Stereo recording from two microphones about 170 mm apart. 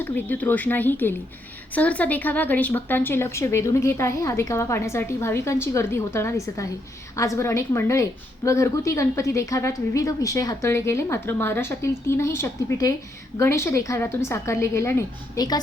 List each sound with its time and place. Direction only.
0.0 s speech: 10° left (ahead or behind)